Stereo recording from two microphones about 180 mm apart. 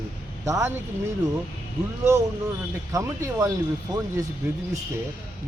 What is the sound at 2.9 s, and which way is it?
Speech, 20° right (ahead or behind).